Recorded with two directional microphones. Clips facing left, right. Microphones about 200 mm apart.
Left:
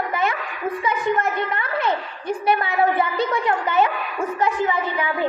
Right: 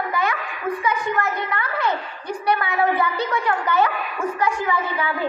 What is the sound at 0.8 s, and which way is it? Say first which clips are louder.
A woman's voice: left 3 dB; 20° left (ahead or behind).